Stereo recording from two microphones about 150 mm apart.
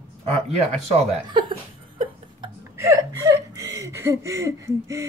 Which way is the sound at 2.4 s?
20° right (ahead or behind).